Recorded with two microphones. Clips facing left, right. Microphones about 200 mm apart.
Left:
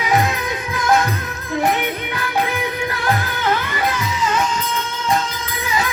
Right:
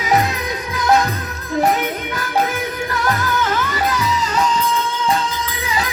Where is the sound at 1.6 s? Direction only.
40° right (ahead or behind).